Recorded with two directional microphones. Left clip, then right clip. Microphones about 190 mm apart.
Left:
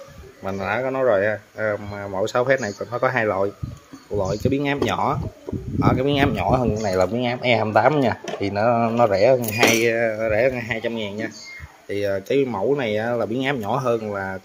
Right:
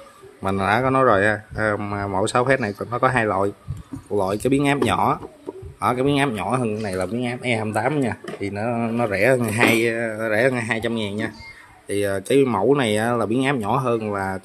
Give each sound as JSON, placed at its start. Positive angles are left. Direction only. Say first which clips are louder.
{"t": 0.4, "sound": "speech", "louder": "right 4 dB", "side_deg": -20}
{"t": 10.2, "sound": "speech", "louder": "even", "side_deg": -15}